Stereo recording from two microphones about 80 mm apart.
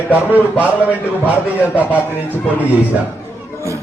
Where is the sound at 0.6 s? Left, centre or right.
Centre.